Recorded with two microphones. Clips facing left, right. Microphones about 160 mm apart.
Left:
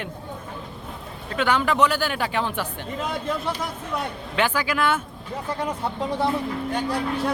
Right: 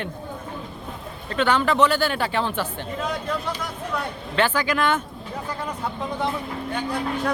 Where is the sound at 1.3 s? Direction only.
10° left (ahead or behind).